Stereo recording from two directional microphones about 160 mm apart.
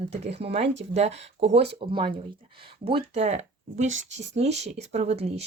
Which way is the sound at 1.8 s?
30° right (ahead or behind).